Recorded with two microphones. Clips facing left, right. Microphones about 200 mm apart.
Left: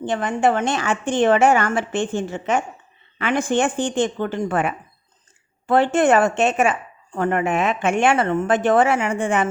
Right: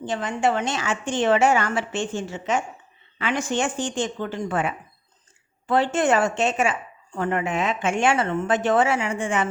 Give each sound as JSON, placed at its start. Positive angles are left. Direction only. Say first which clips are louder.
{"t": 0.0, "sound": "a woman's voice", "louder": "left 4 dB", "side_deg": 55}